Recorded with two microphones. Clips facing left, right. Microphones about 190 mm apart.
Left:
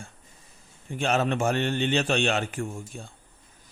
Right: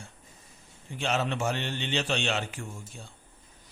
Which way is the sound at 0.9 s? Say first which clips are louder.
Left 5 dB; 50° left (ahead or behind).